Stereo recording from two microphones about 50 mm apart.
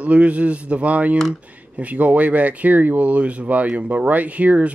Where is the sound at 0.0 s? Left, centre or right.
Right.